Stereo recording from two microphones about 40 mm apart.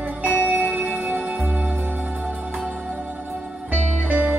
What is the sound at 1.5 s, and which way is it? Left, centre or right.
Music, centre.